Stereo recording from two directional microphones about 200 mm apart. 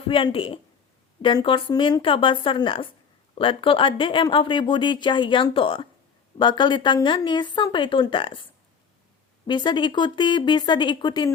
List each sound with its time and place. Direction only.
0.1 s speech: 25° left (ahead or behind)
9.5 s speech: 20° left (ahead or behind)